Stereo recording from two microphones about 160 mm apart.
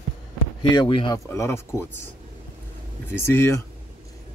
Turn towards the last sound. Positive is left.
turn(degrees=15)  # may be behind; listen again after turning